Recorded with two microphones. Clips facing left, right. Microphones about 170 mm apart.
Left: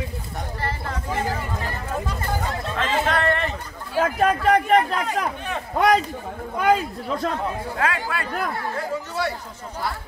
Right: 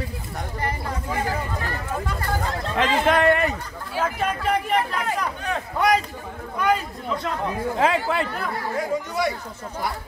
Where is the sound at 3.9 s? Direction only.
45° left (ahead or behind).